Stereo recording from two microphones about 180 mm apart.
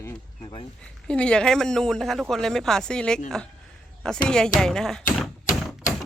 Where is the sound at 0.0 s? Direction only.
15° left (ahead or behind).